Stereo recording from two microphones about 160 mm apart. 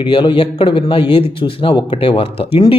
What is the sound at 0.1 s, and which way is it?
A man's voice, 30° left (ahead or behind).